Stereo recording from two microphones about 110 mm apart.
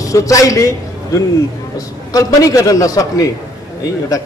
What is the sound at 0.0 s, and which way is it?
A man's voice, 30° left (ahead or behind).